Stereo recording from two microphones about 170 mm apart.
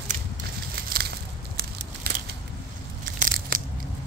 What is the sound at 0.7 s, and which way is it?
Crushing, 65° right (ahead or behind).